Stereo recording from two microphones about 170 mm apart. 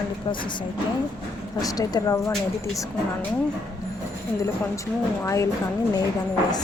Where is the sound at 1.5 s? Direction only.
20° left (ahead or behind).